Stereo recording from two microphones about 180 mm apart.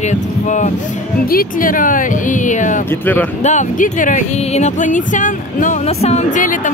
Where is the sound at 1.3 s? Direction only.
50° left (ahead or behind).